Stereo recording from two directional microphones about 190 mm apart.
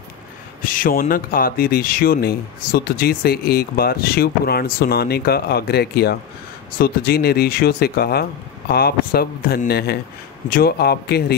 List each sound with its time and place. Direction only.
0.6 s speech: 45° left (ahead or behind)